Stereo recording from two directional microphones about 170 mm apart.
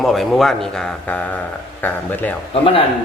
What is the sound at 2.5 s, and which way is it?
Speech, 30° left (ahead or behind).